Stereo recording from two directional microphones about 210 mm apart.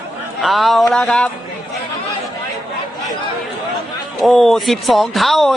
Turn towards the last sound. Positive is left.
turn(degrees=0)  # may be behind; listen again after turning